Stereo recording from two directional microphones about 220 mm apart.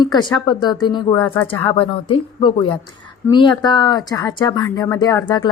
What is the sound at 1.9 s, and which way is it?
Speech, 20° left (ahead or behind).